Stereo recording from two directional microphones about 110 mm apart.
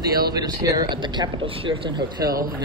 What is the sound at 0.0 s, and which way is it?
Speech, 35° right (ahead or behind).